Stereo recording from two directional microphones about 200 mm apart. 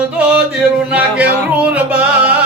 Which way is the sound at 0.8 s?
5° right (ahead or behind).